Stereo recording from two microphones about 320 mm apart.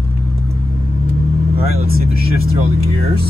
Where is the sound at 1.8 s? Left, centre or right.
Right.